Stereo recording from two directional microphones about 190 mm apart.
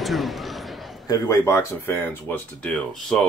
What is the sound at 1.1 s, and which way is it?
Speech, 15° left (ahead or behind).